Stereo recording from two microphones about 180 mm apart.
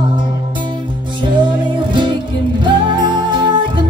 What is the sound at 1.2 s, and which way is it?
Music, 25° right (ahead or behind).